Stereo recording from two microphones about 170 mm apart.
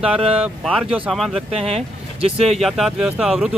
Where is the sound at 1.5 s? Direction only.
35° right (ahead or behind).